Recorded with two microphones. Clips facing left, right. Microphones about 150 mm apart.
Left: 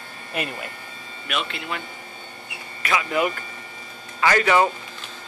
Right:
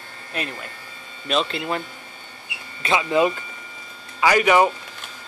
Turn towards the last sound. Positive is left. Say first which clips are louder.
# right 2 dB
turn(degrees=-15)  # may be behind; listen again after turning